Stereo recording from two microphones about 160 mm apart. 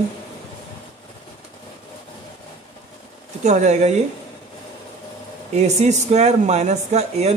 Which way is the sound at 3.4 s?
45° right (ahead or behind).